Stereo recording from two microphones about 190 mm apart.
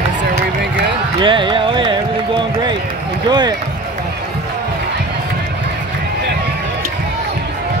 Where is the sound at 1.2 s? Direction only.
25° right (ahead or behind).